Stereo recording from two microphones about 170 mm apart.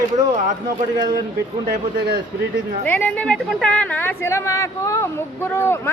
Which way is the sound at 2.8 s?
10° left (ahead or behind).